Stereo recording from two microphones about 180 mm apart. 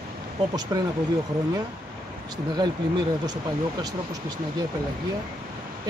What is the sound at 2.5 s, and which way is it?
Speech, 25° right (ahead or behind).